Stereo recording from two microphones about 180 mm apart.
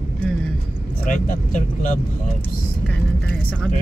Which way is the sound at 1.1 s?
50° left (ahead or behind).